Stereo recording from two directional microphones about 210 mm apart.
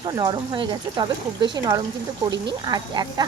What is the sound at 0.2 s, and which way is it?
Speech, 20° right (ahead or behind).